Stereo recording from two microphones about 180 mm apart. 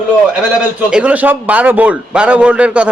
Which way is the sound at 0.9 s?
5° right (ahead or behind).